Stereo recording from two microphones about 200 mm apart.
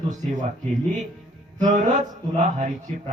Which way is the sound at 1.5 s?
40° right (ahead or behind).